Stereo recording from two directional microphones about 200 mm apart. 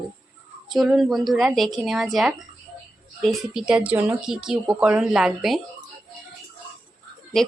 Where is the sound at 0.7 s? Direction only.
Centre (ahead or behind).